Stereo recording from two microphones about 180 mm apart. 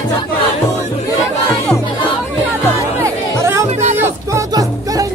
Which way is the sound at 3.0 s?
15° right (ahead or behind).